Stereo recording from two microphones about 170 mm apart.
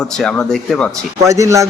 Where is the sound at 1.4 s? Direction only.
20° right (ahead or behind).